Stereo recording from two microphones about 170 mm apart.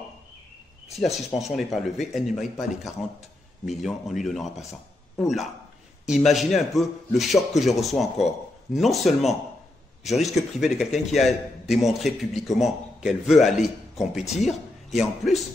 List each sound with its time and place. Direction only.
0.9 s a man's voice: centre (ahead or behind)